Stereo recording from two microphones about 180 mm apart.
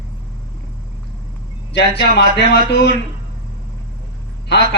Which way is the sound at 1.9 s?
70° left (ahead or behind).